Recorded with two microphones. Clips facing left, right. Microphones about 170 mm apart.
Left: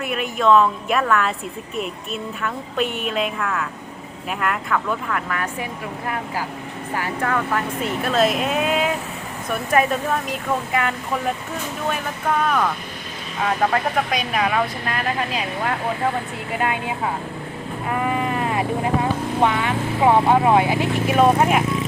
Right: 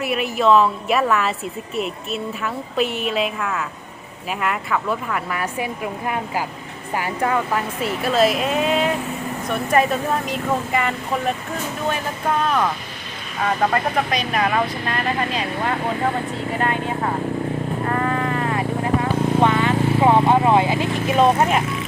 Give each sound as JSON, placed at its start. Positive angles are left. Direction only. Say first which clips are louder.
{"t": 0.0, "sound": "speech", "louder": "right 1 dB", "side_deg": -5}
{"t": 6.9, "sound": "speech", "louder": "right 2 dB", "side_deg": -15}
{"t": 13.4, "sound": "speech", "louder": "even", "side_deg": 0}
{"t": 17.8, "sound": "sheep", "louder": "left 1 dB", "side_deg": 10}
{"t": 19.4, "sound": "speech", "louder": "right 2 dB", "side_deg": 10}